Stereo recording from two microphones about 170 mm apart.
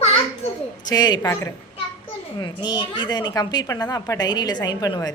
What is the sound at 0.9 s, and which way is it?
A woman's voice, 25° left (ahead or behind).